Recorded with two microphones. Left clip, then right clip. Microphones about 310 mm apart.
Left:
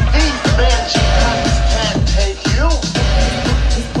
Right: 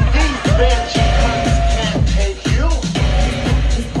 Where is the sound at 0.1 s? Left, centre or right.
Left.